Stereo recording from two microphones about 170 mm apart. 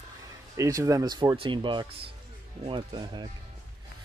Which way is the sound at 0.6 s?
20° right (ahead or behind).